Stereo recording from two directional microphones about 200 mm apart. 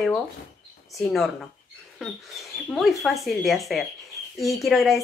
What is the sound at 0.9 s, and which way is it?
A woman's voice, centre (ahead or behind).